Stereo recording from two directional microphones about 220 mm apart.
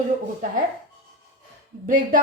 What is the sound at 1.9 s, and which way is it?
Speech, 35° right (ahead or behind).